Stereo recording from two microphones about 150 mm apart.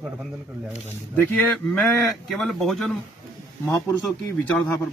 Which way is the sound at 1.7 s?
5° left (ahead or behind).